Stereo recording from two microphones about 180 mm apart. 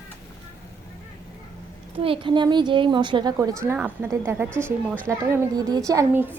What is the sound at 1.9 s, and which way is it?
A woman's voice, 30° right (ahead or behind).